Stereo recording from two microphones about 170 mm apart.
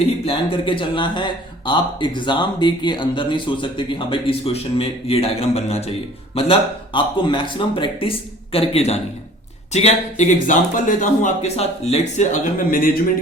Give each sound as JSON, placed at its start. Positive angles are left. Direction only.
{"t": 0.3, "sound": "a man's voice", "side_deg": 30}